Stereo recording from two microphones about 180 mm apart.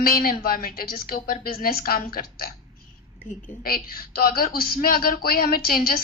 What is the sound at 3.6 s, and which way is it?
A woman's voice, 55° left (ahead or behind).